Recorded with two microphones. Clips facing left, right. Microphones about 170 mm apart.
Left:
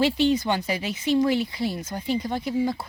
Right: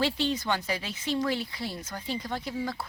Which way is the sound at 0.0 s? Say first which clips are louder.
Left 7 dB; 15° left (ahead or behind).